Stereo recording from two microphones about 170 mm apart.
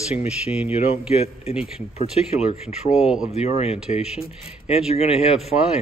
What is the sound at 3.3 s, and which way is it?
Speech, 40° left (ahead or behind).